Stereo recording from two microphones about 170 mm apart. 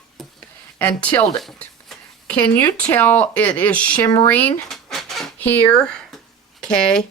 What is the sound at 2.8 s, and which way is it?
Speech, 10° left (ahead or behind).